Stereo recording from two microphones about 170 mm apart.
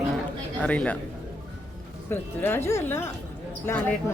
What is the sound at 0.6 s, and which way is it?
Speech, 10° left (ahead or behind).